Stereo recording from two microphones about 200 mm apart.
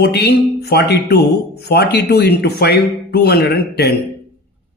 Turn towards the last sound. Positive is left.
turn(degrees=55)  # may be behind; listen again after turning